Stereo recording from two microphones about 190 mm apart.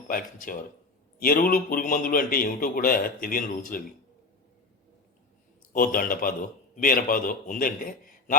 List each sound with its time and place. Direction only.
0.1 s a man's voice: 45° left (ahead or behind)
5.7 s a man's voice: 50° left (ahead or behind)